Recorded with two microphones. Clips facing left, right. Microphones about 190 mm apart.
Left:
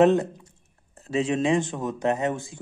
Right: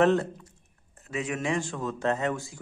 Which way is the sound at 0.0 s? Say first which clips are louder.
Left 4 dB; 20° left (ahead or behind).